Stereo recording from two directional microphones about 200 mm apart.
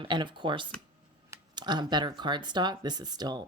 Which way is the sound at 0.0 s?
25° right (ahead or behind).